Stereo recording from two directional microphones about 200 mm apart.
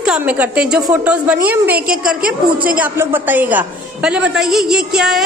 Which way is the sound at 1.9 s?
45° right (ahead or behind).